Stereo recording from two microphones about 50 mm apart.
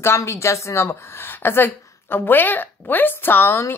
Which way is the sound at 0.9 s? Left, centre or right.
Left.